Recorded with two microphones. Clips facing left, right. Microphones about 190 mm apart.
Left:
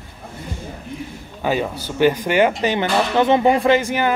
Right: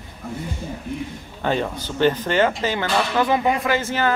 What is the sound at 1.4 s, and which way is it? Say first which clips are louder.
Speech: left 2 dB; 10° left (ahead or behind).